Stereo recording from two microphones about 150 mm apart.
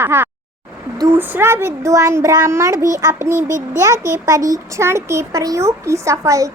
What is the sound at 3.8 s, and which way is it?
A child's voice, 20° right (ahead or behind).